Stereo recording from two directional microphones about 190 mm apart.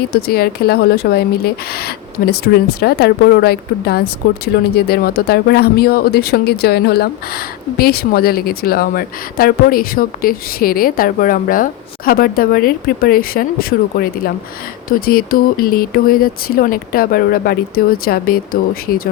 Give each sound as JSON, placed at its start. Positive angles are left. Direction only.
{"t": 0.1, "sound": "speech", "side_deg": 55}